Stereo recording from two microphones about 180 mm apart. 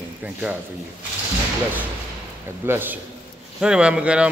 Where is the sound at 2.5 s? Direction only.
10° right (ahead or behind).